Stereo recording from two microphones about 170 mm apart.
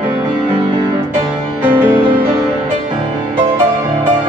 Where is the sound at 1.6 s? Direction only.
10° right (ahead or behind).